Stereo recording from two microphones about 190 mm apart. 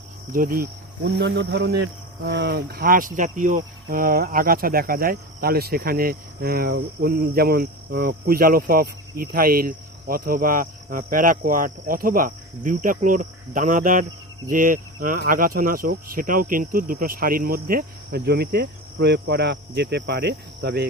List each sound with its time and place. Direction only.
0.3 s cricket: 50° right (ahead or behind)